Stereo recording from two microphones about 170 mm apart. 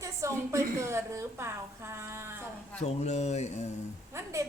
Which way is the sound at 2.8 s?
40° left (ahead or behind).